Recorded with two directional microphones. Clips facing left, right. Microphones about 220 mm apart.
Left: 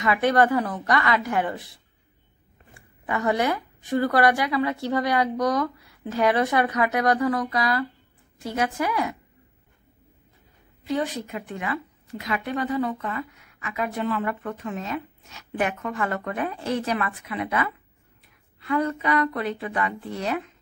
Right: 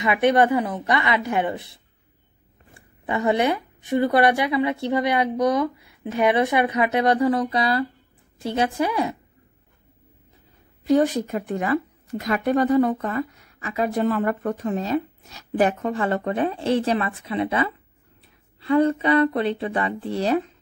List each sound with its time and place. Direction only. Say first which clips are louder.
0.0 s a woman's voice: right 2 dB; 20° right (ahead or behind)
3.1 s a woman's voice: right 3 dB; 20° right (ahead or behind)
10.8 s a woman's voice: right 8 dB; 45° right (ahead or behind)